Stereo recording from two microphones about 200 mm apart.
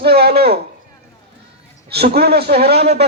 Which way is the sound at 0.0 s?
55° right (ahead or behind).